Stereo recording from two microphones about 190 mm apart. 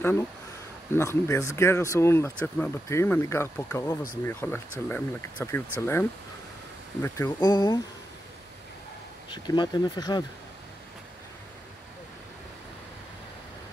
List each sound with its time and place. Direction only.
0.9 s speech: 15° left (ahead or behind)
9.3 s speech: 20° left (ahead or behind)